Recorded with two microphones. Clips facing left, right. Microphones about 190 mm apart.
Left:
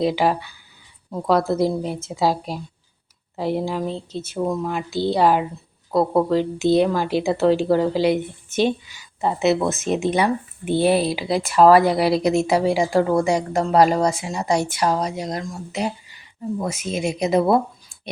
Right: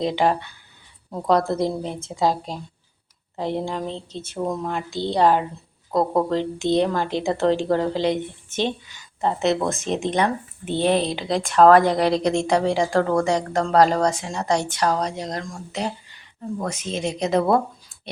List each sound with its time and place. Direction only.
0.0 s a woman's voice: 5° left (ahead or behind)